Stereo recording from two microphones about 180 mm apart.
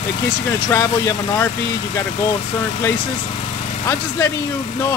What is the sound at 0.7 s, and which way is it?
Speech, 15° left (ahead or behind).